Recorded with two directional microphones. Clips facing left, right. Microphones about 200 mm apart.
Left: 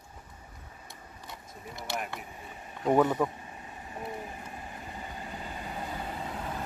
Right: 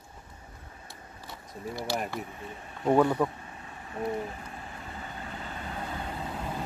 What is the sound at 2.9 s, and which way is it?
Speech, 15° left (ahead or behind).